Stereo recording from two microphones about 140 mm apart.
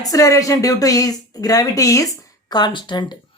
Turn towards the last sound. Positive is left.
turn(degrees=30)  # may be behind; listen again after turning